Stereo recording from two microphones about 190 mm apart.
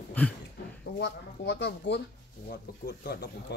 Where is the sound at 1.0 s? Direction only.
65° left (ahead or behind).